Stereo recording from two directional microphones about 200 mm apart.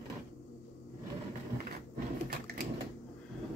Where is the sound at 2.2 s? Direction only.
50° right (ahead or behind).